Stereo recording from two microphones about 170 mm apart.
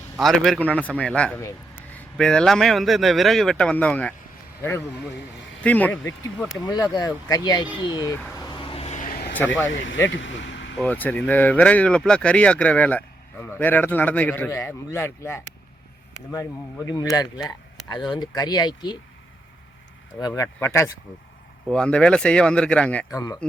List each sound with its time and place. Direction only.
0.2 s speech: centre (ahead or behind)
5.6 s speech: 10° left (ahead or behind)
6.6 s speech: 25° left (ahead or behind)
8.4 s vehicle: 25° left (ahead or behind); by 9.3 s 55° left (ahead or behind)
9.6 s speech: 90° left
10.8 s speech: 10° left (ahead or behind)
16.8 s speech: 20° left (ahead or behind)
17.3 s a sound: 5° right (ahead or behind)
17.8 s speech: 25° left (ahead or behind)
20.2 s speech: 20° left (ahead or behind)
21.7 s speech: 5° left (ahead or behind)